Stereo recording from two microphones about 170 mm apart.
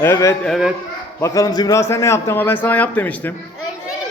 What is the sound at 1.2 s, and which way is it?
A man's voice, 20° left (ahead or behind).